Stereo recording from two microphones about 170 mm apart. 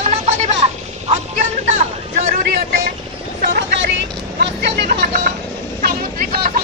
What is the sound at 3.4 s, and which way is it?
Vehicle, 90° right.